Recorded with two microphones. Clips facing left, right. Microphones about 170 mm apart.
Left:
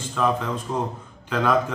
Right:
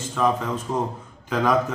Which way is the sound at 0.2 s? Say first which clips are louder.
Right 1 dB; centre (ahead or behind).